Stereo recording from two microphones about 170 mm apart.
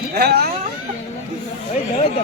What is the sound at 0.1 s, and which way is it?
Speech, 65° right (ahead or behind).